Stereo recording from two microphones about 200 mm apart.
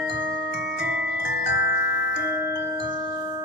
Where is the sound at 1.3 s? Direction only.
55° left (ahead or behind).